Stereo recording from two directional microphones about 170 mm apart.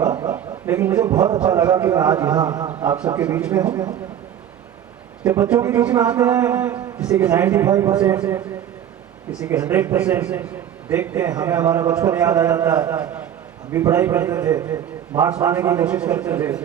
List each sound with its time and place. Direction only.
0.3 s a man's voice: 10° right (ahead or behind)
2.3 s a man's voice: 25° right (ahead or behind)
2.8 s a man's voice: 10° right (ahead or behind)
5.2 s a man's voice: 10° right (ahead or behind)
9.5 s a man's voice: 10° right (ahead or behind)